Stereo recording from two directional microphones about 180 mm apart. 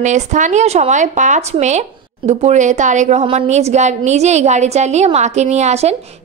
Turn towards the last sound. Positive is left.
turn(degrees=-35)  # may be behind; listen again after turning